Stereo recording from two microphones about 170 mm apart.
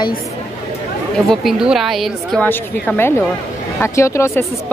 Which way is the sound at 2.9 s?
15° left (ahead or behind).